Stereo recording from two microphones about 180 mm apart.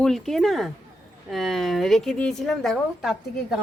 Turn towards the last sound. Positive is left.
turn(degrees=0)  # may be behind; listen again after turning